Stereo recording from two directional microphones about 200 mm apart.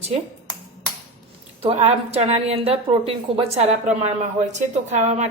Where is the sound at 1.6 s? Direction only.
30° right (ahead or behind).